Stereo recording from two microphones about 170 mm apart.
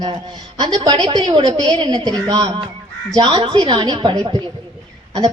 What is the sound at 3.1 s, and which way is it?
A woman's voice, 25° right (ahead or behind).